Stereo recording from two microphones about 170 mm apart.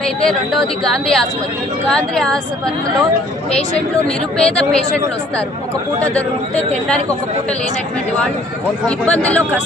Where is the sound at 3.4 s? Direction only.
35° left (ahead or behind).